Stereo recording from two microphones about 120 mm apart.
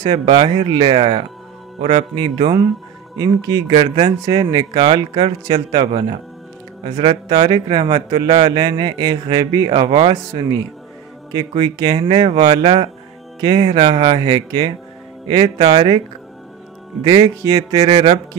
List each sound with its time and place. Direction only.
0.0 s speech: 45° right (ahead or behind)
3.2 s speech: 35° right (ahead or behind)
3.6 s speech: 50° right (ahead or behind)
9.7 s speech: 50° right (ahead or behind)
15.6 s speech: 50° right (ahead or behind)
17.0 s speech: 35° right (ahead or behind)
17.8 s a man's voice: 60° right (ahead or behind)